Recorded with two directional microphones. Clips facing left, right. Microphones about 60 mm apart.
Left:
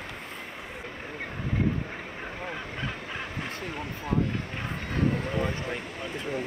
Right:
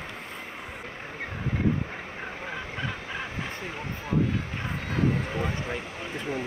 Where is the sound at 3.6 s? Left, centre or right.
Centre.